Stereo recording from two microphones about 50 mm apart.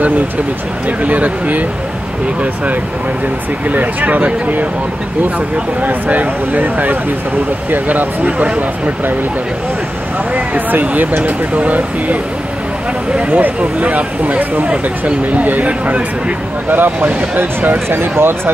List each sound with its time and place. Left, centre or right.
0.8 s speech: right
5.8 s speech: right
10.3 s speech: right
13.3 s speech: right